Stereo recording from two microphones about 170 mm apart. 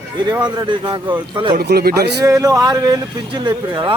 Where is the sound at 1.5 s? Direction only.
70° right (ahead or behind).